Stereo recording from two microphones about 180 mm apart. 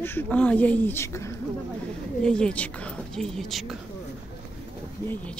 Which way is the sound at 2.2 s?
5° left (ahead or behind).